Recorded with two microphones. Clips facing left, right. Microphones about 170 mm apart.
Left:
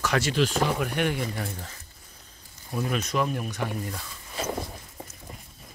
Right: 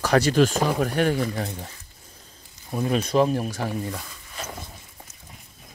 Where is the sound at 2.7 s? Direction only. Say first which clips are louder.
Right 4 dB; 25° right (ahead or behind).